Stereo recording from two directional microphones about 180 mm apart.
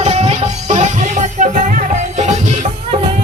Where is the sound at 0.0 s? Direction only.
35° right (ahead or behind).